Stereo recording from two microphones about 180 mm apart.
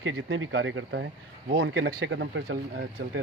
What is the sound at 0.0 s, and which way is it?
Speech, 90° right.